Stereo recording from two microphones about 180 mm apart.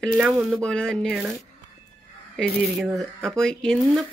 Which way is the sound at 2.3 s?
Centre (ahead or behind).